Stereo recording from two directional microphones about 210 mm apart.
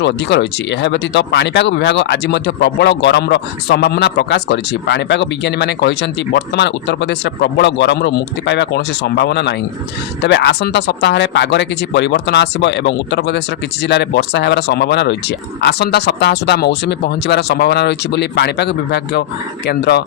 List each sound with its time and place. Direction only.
0.0 s speech: 55° left (ahead or behind)